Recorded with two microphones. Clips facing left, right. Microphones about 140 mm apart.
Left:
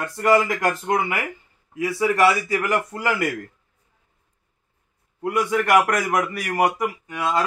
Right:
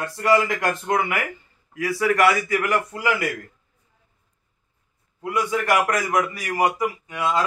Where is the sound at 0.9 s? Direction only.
30° left (ahead or behind); by 3.2 s 45° left (ahead or behind).